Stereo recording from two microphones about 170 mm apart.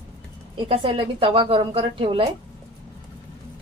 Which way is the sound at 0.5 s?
30° right (ahead or behind).